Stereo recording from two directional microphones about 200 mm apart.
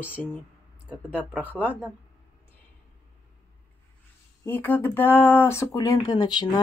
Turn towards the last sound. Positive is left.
turn(degrees=20)  # may be behind; listen again after turning